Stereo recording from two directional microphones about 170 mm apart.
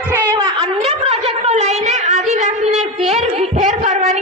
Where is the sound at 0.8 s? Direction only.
35° right (ahead or behind).